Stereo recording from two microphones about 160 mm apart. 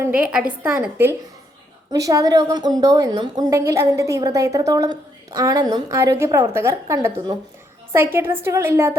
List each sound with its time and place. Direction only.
0.2 s a woman's voice: 5° right (ahead or behind)